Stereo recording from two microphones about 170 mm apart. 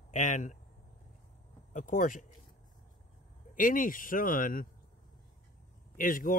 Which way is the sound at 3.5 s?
55° left (ahead or behind).